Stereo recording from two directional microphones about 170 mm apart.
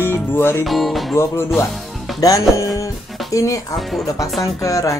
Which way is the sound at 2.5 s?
20° left (ahead or behind).